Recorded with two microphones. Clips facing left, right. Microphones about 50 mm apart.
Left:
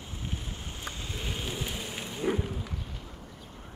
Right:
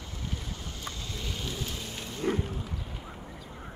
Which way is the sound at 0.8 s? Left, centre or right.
Left.